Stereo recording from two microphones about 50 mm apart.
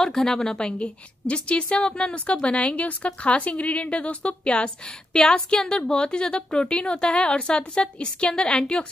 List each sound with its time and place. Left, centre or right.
0.0 s a woman's voice: centre